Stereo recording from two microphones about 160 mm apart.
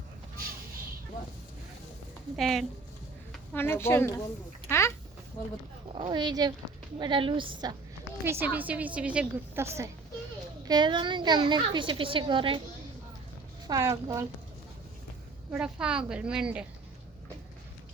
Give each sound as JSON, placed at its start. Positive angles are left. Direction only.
{"t": 2.3, "sound": "speech", "side_deg": 0}
{"t": 3.5, "sound": "a woman's voice", "side_deg": 15}
{"t": 4.7, "sound": "a sound", "side_deg": 15}
{"t": 5.9, "sound": "a woman's voice", "side_deg": -35}
{"t": 8.2, "sound": "a woman's voice", "side_deg": -15}
{"t": 10.6, "sound": "a woman's voice", "side_deg": -25}
{"t": 13.7, "sound": "a woman's voice", "side_deg": -20}
{"t": 15.5, "sound": "speech", "side_deg": -5}